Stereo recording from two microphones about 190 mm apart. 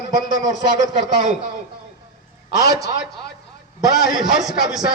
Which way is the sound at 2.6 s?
20° right (ahead or behind).